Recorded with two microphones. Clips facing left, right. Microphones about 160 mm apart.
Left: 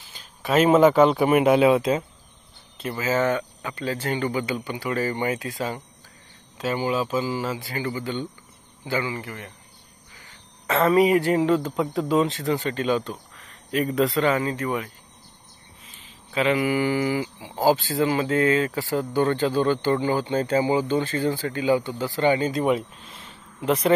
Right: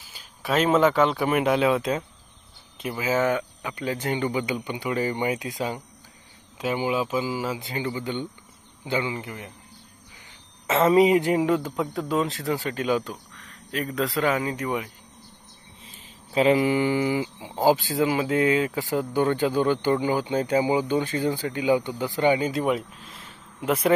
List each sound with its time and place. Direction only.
0.1 s a sound: 10° right (ahead or behind)
0.5 s speech: 10° left (ahead or behind)
2.8 s speech: 15° right (ahead or behind)
8.8 s mantra: 20° right (ahead or behind)
10.7 s speech: 25° right (ahead or behind)
11.7 s speech: centre (ahead or behind)
15.8 s a sound: 35° right (ahead or behind)
16.7 s mantra: 20° right (ahead or behind)
17.6 s speech: 15° right (ahead or behind)